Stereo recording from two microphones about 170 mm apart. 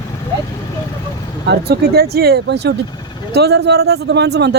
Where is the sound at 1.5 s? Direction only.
65° right (ahead or behind).